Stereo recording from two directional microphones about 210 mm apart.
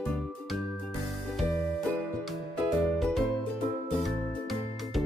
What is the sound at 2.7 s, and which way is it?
Music, centre (ahead or behind).